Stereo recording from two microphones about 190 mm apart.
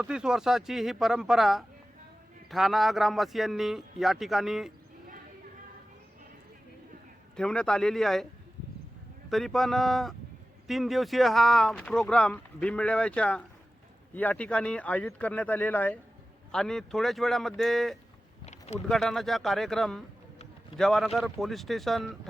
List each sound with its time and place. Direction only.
0.0 s speech: 5° right (ahead or behind)
7.3 s speech: 5° left (ahead or behind)
9.3 s speech: centre (ahead or behind)
18.4 s boat: 35° left (ahead or behind)
18.9 s speech: centre (ahead or behind)